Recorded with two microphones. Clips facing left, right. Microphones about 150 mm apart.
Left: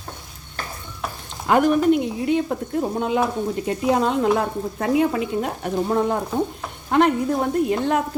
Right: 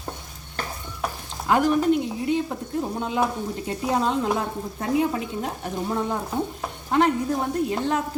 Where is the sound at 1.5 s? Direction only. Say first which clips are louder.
Left 3 dB; 60° left (ahead or behind).